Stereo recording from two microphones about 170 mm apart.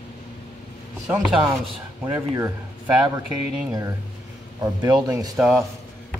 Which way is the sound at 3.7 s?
20° right (ahead or behind).